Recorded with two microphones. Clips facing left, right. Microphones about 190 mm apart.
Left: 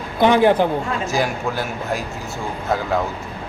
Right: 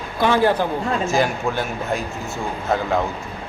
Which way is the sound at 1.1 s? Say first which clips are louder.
Even; 5° left (ahead or behind).